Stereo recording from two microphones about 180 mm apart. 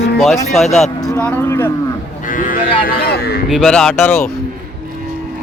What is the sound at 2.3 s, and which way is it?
Cattle, 50° left (ahead or behind).